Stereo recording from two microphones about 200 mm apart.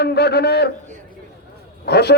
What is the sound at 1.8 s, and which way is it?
Speech, 55° left (ahead or behind).